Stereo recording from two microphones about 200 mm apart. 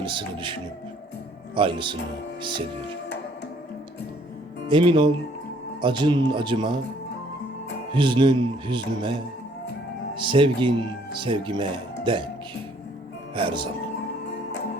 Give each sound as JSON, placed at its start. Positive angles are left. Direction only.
{"t": 0.0, "sound": "speech", "side_deg": -25}
{"t": 1.5, "sound": "speech", "side_deg": -25}
{"t": 4.7, "sound": "speech", "side_deg": -25}
{"t": 7.9, "sound": "speech", "side_deg": -25}
{"t": 10.2, "sound": "speech", "side_deg": -25}
{"t": 13.3, "sound": "speech", "side_deg": -25}